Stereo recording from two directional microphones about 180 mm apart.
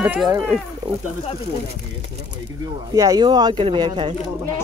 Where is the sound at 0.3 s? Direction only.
20° right (ahead or behind).